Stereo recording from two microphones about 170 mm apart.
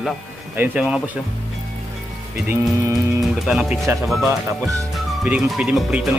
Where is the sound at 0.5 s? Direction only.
10° right (ahead or behind).